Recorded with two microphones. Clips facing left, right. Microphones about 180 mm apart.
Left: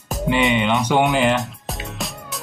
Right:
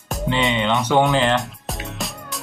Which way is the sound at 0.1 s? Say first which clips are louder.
Left 2 dB; centre (ahead or behind).